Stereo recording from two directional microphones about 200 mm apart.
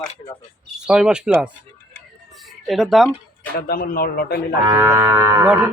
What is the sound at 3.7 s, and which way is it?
Speech, 50° left (ahead or behind).